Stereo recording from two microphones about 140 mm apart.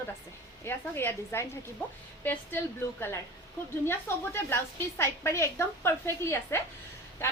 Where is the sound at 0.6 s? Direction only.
15° left (ahead or behind).